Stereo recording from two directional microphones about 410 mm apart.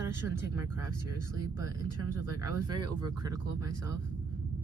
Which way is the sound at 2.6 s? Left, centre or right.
Centre.